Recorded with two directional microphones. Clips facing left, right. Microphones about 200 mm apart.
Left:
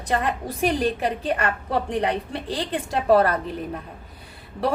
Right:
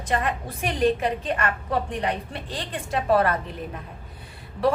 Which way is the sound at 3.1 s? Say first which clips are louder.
Left 3 dB; 35° left (ahead or behind).